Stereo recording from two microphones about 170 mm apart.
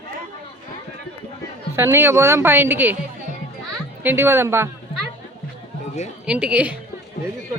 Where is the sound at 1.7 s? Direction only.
15° right (ahead or behind).